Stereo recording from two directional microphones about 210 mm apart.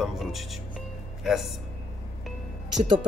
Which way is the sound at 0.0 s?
Centre (ahead or behind).